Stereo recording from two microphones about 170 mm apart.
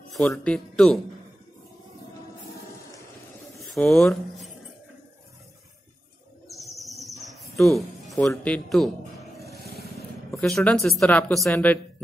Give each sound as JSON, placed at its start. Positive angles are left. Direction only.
{"t": 0.4, "sound": "speech", "side_deg": 5}
{"t": 3.6, "sound": "speech", "side_deg": 0}
{"t": 6.5, "sound": "bird", "side_deg": 0}
{"t": 8.3, "sound": "speech", "side_deg": 5}
{"t": 9.6, "sound": "vehicle", "side_deg": -65}
{"t": 10.3, "sound": "speech", "side_deg": 0}